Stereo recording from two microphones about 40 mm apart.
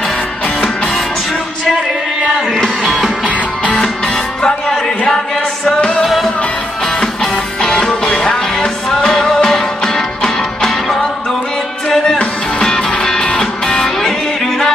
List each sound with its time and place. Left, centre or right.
4.4 s music: centre
7.6 s music: centre
13.0 s music: centre